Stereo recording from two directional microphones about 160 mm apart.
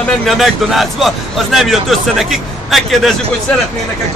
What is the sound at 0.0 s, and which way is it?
A man's voice, centre (ahead or behind).